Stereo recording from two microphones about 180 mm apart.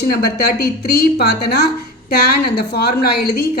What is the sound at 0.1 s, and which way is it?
A woman's voice, 60° left (ahead or behind).